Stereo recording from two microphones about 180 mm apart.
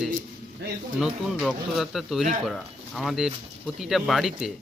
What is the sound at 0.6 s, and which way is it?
Speech, 65° right (ahead or behind).